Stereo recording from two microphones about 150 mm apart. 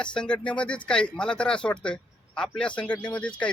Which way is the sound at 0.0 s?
5° left (ahead or behind).